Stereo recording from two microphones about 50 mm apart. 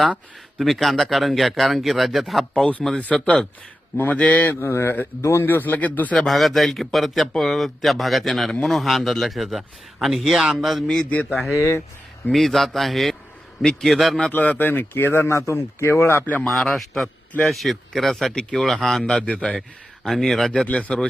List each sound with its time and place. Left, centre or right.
0.6 s a man's voice: centre
3.9 s speech: left
4.6 s a man's voice: left
6.2 s a man's voice: centre
11.5 s speech: left
12.3 s a man's voice: centre
14.3 s speech: left
14.9 s speech: left
15.3 s a man's voice: left
16.2 s speech: left
16.5 s speech: centre
19.2 s a man's voice: left
20.1 s a man's voice: centre
20.7 s a man's voice: left